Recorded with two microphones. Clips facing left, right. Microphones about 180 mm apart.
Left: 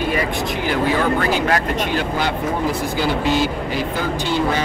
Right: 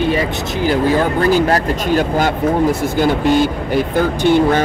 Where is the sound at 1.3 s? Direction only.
40° right (ahead or behind).